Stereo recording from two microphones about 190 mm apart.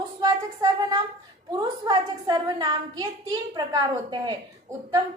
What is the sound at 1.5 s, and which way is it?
A woman's voice, 20° right (ahead or behind).